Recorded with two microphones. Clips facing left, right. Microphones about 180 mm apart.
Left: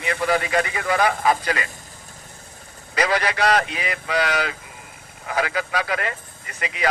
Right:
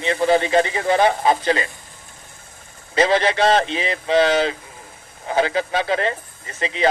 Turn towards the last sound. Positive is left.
turn(degrees=-25)  # may be behind; listen again after turning